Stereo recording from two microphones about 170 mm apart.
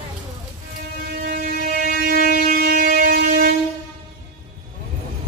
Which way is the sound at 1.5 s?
55° right (ahead or behind).